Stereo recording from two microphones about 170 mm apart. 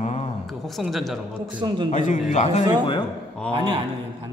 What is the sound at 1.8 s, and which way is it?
Speech, 45° left (ahead or behind).